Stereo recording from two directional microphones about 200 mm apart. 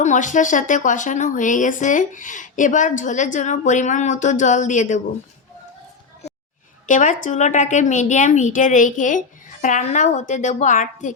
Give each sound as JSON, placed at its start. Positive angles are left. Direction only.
{"t": 0.0, "sound": "speech", "side_deg": 40}
{"t": 6.8, "sound": "speech", "side_deg": 40}